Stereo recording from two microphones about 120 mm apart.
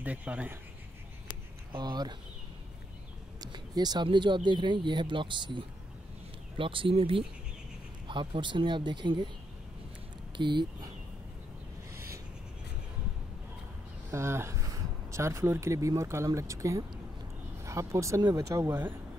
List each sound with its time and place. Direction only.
0.0 s speech: 10° right (ahead or behind)
1.7 s speech: 35° right (ahead or behind)
3.3 s speech: 35° right (ahead or behind)
10.3 s speech: 40° right (ahead or behind)
11.9 s a sound: 25° right (ahead or behind)
14.1 s speech: 20° right (ahead or behind)